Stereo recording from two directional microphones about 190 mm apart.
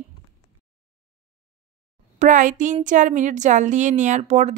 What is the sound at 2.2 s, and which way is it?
Speech, 45° right (ahead or behind).